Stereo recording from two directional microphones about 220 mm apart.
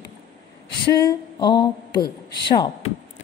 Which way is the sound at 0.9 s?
15° left (ahead or behind).